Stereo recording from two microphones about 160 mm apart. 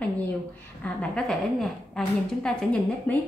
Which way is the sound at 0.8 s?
5° left (ahead or behind).